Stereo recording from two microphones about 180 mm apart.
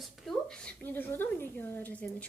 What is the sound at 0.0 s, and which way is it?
A woman's voice, centre (ahead or behind).